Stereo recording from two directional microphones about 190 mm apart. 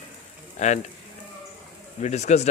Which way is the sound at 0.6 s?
40° left (ahead or behind).